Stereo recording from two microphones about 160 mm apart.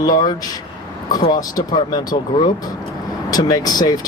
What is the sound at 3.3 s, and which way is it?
Speech, 25° left (ahead or behind).